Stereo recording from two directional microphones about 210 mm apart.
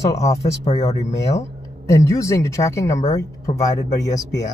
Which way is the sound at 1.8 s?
15° left (ahead or behind).